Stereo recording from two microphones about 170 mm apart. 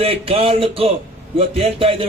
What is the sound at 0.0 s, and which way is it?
A man's voice, 35° right (ahead or behind).